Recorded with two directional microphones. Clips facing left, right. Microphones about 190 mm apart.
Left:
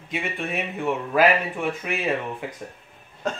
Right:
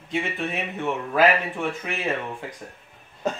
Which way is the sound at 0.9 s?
10° left (ahead or behind).